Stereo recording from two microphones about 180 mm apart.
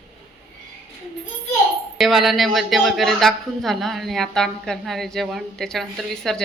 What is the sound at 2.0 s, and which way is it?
Speech, centre (ahead or behind).